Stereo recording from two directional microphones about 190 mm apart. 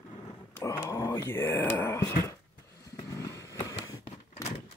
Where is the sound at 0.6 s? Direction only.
15° left (ahead or behind).